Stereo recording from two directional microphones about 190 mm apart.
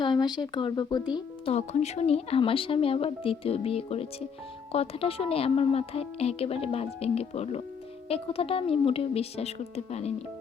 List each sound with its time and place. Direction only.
0.0 s speech: 25° left (ahead or behind)
1.5 s a woman's voice: 35° left (ahead or behind)